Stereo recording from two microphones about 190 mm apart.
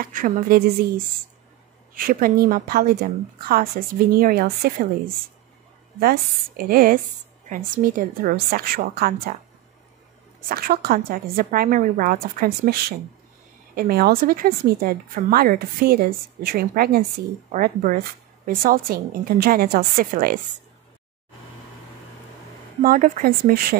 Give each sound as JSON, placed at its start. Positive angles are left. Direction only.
{"t": 0.0, "sound": "speech", "side_deg": -50}
{"t": 5.9, "sound": "speech", "side_deg": -50}
{"t": 10.5, "sound": "speech", "side_deg": -55}
{"t": 22.8, "sound": "speech", "side_deg": -45}